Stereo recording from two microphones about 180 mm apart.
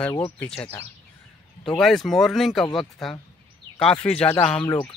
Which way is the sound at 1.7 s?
Centre (ahead or behind).